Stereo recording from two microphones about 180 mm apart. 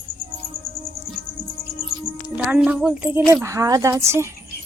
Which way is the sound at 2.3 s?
5° right (ahead or behind).